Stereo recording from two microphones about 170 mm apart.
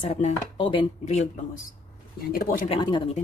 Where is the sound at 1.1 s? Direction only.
45° left (ahead or behind).